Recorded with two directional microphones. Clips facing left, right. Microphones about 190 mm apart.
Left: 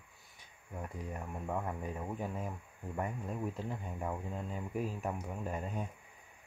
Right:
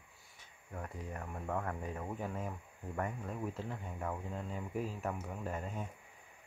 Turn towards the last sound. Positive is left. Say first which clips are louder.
# left 2 dB
turn(degrees=15)  # may be behind; listen again after turning